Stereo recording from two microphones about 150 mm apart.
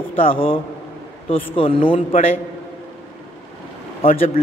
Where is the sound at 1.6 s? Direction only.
35° left (ahead or behind).